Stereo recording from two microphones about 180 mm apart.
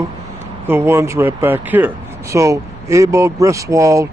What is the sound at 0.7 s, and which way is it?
Speech, 15° right (ahead or behind).